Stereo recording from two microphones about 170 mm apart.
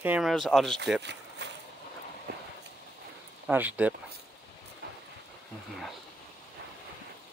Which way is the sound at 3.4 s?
10° right (ahead or behind).